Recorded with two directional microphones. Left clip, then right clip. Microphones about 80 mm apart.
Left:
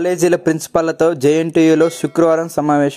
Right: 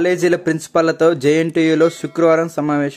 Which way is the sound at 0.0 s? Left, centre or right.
Left.